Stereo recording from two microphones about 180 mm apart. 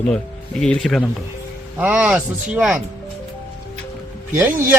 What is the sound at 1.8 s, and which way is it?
Speech, 10° right (ahead or behind).